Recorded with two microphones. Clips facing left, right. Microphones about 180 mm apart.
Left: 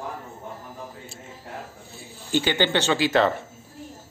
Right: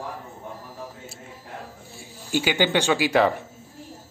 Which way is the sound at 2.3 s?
10° right (ahead or behind).